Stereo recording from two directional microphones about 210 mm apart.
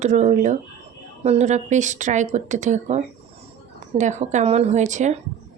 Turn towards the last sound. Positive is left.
turn(degrees=-35)  # may be behind; listen again after turning